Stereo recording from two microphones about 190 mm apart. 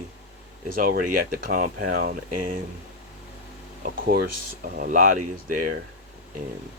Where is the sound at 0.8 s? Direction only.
45° right (ahead or behind).